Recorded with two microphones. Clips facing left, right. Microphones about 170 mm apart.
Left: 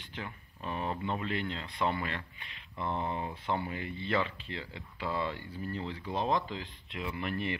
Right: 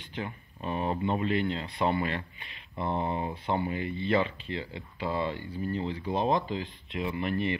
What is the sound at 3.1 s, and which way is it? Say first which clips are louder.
Speech: right 4 dB; 25° right (ahead or behind).